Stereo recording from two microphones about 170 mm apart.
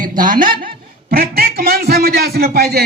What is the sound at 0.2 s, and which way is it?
Speech, 55° right (ahead or behind).